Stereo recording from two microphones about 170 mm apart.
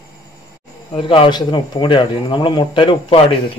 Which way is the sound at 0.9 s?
30° left (ahead or behind).